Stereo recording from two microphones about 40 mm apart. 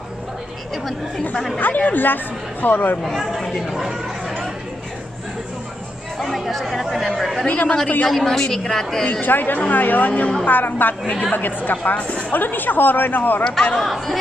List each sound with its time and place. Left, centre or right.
1.6 s speech: left
3.0 s speech: centre
6.1 s speech: centre
7.4 s speech: left
8.1 s a woman's voice: centre
9.2 s speech: left
10.4 s speech: left
12.3 s speech: left
13.8 s speech: centre